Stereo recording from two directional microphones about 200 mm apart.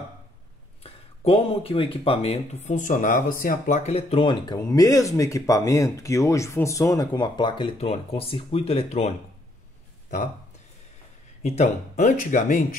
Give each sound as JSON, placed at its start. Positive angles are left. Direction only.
{"t": 0.8, "sound": "speech", "side_deg": 30}
{"t": 11.4, "sound": "speech", "side_deg": 35}